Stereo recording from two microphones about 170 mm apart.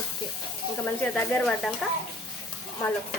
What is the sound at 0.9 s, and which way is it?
Speech, 5° left (ahead or behind).